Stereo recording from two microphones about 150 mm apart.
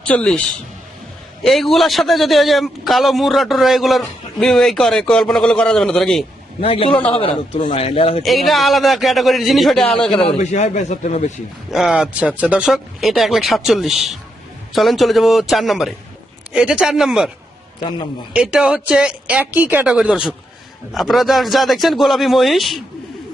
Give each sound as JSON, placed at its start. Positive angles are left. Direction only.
{"t": 0.1, "sound": "a man's voice", "side_deg": 10}
{"t": 1.5, "sound": "a man's voice", "side_deg": 0}
{"t": 6.6, "sound": "a man's voice", "side_deg": 40}
{"t": 8.2, "sound": "a man's voice", "side_deg": 0}
{"t": 10.2, "sound": "a man's voice", "side_deg": 50}
{"t": 11.7, "sound": "a man's voice", "side_deg": 0}
{"t": 18.3, "sound": "a woman's voice", "side_deg": -5}